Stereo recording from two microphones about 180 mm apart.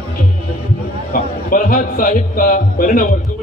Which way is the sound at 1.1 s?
55° left (ahead or behind).